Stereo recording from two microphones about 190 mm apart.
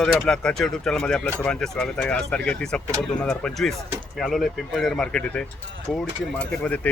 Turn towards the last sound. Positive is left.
turn(degrees=5)  # may be behind; listen again after turning